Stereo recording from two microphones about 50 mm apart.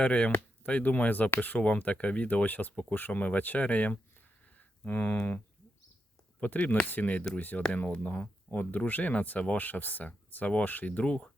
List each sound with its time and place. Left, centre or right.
0.0 s speech: left
6.4 s speech: left